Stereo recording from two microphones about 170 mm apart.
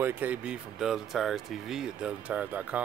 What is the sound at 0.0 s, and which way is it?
Speech, 10° right (ahead or behind).